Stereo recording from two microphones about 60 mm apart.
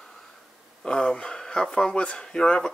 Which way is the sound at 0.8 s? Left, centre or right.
Centre.